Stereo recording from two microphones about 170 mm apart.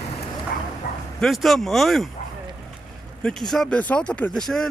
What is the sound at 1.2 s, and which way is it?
Speech, centre (ahead or behind).